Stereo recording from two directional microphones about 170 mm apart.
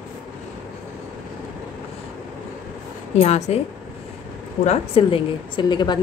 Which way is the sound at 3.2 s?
40° left (ahead or behind).